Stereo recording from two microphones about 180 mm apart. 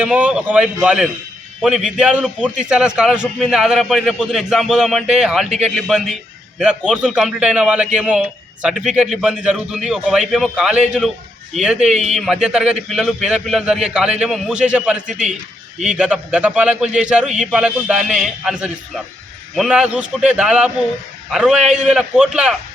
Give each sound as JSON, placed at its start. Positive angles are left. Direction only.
{"t": 0.0, "sound": "a man's voice", "side_deg": -10}
{"t": 11.9, "sound": "a man's voice", "side_deg": -40}
{"t": 12.1, "sound": "a man's voice", "side_deg": -5}
{"t": 15.0, "sound": "a man's voice", "side_deg": -40}
{"t": 16.0, "sound": "a man's voice", "side_deg": -5}